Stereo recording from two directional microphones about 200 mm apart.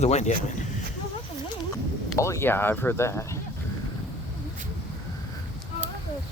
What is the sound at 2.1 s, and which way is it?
Speech, 15° left (ahead or behind).